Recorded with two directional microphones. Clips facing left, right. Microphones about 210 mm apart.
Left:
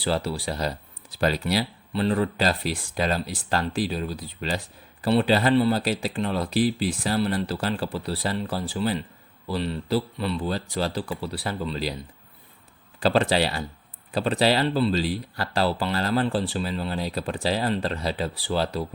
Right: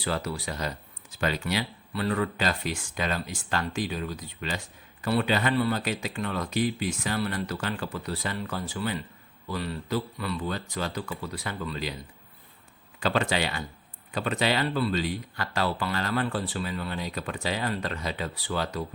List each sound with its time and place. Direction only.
0.0 s speech: 30° left (ahead or behind)
13.0 s speech: 35° left (ahead or behind)